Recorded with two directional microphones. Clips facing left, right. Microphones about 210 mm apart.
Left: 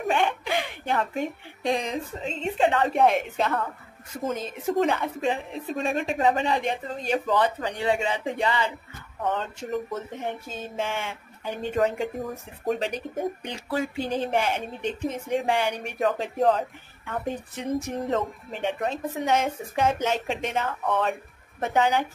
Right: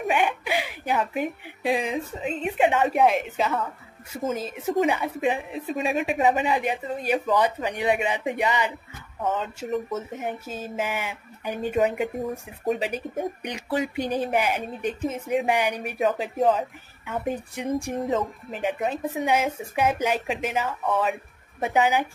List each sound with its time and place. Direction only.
0.1 s speech: 10° right (ahead or behind)
2.5 s speech: 15° right (ahead or behind)
2.9 s a woman's voice: centre (ahead or behind)
13.4 s a woman's voice: 15° right (ahead or behind); by 17.4 s centre (ahead or behind)
17.6 s speech: 10° right (ahead or behind)
18.1 s a woman's voice: centre (ahead or behind)